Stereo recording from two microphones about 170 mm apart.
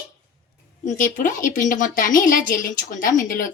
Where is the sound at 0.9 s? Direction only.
50° left (ahead or behind).